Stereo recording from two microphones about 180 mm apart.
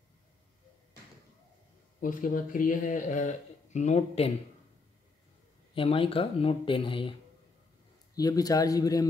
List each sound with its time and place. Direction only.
2.0 s speech: 50° left (ahead or behind)
5.8 s speech: 30° left (ahead or behind)